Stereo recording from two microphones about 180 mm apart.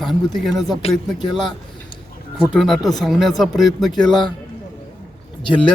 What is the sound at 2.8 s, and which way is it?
Speech, 20° left (ahead or behind).